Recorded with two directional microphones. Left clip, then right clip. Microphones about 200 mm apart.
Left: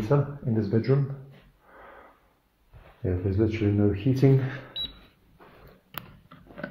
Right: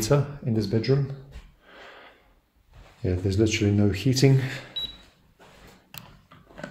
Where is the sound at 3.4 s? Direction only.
60° right (ahead or behind).